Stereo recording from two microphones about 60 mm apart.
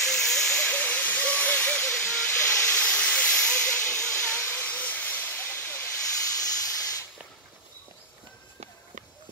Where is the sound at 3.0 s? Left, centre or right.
Left.